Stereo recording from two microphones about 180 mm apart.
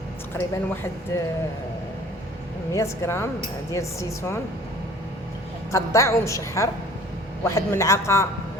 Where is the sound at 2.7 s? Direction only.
15° left (ahead or behind).